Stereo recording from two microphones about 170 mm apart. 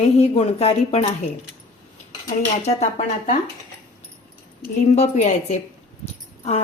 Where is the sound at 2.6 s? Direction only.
40° left (ahead or behind).